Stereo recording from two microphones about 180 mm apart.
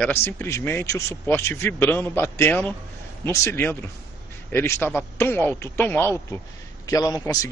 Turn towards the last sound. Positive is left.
turn(degrees=20)  # may be behind; listen again after turning